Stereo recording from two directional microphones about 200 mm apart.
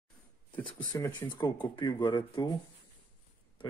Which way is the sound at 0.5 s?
10° left (ahead or behind).